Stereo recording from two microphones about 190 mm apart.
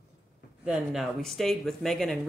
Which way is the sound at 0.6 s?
5° right (ahead or behind).